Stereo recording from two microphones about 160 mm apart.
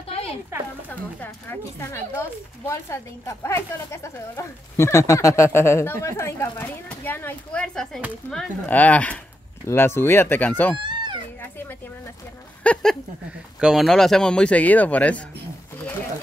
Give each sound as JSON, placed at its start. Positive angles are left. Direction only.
{"t": 0.1, "sound": "a sound", "side_deg": 35}
{"t": 0.8, "sound": "a woman's voice", "side_deg": 10}
{"t": 10.8, "sound": "baby cry", "side_deg": -30}
{"t": 12.6, "sound": "speech", "side_deg": 10}
{"t": 13.6, "sound": "speech", "side_deg": -5}